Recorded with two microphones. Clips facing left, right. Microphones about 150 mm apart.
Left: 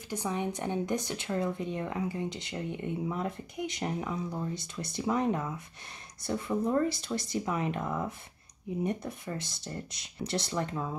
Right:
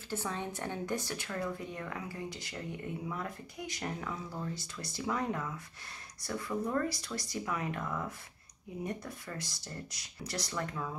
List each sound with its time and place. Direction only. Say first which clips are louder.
0.1 s speech: left 5 dB; 15° left (ahead or behind)